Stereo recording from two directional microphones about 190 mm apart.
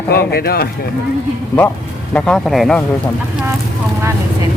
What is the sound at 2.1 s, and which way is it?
Speech, 5° left (ahead or behind).